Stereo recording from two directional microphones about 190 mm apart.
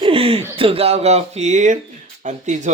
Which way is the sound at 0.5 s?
30° right (ahead or behind).